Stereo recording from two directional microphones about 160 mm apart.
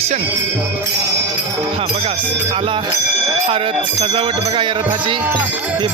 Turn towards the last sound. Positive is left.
turn(degrees=-30)  # may be behind; listen again after turning